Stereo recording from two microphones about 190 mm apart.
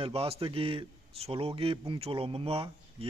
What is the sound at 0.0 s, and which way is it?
A man's voice, 30° right (ahead or behind).